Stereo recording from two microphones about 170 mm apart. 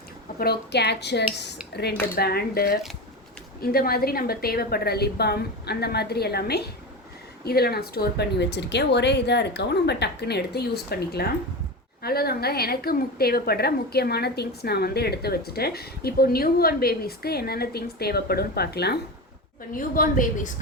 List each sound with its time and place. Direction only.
0.3 s a woman's voice: 70° left (ahead or behind)
2.1 s a woman's voice: 65° left (ahead or behind)
19.7 s a woman's voice: 55° left (ahead or behind)